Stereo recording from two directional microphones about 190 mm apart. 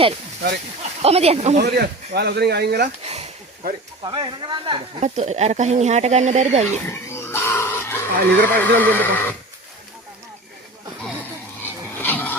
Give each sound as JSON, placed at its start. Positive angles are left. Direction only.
{"t": 1.0, "sound": "speech", "side_deg": -35}
{"t": 1.6, "sound": "speech", "side_deg": -60}
{"t": 3.0, "sound": "a sound", "side_deg": -35}
{"t": 4.0, "sound": "speech", "side_deg": -25}
{"t": 5.0, "sound": "speech", "side_deg": -40}
{"t": 6.9, "sound": "speech", "side_deg": 15}
{"t": 11.6, "sound": "a sound", "side_deg": 10}